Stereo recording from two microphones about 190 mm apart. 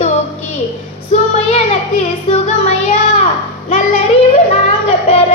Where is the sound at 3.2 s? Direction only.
40° left (ahead or behind).